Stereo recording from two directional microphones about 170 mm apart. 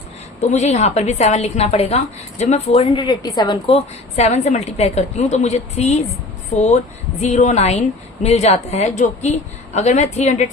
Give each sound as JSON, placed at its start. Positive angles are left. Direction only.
{"t": 0.4, "sound": "a woman's voice", "side_deg": 40}
{"t": 3.0, "sound": "a woman's voice", "side_deg": 25}